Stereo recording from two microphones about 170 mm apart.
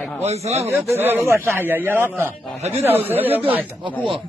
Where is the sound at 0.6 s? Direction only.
15° right (ahead or behind).